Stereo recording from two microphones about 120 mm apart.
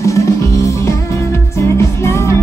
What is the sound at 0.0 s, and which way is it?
Music, 25° left (ahead or behind).